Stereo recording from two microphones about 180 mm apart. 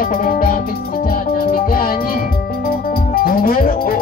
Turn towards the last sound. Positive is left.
turn(degrees=55)  # may be behind; listen again after turning